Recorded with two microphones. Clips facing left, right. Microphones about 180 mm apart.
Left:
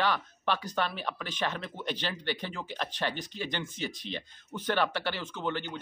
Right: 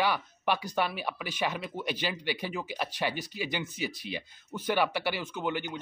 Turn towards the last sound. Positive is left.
turn(degrees=-10)  # may be behind; listen again after turning